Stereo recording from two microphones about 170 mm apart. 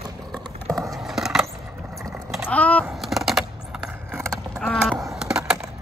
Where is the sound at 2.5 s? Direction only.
10° left (ahead or behind).